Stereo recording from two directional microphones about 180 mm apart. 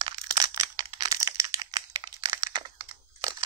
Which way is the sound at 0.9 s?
20° right (ahead or behind).